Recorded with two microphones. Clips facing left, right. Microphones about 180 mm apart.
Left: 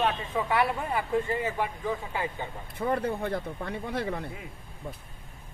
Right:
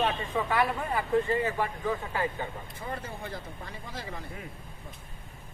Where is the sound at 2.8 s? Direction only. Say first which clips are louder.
Left 11 dB; 60° left (ahead or behind).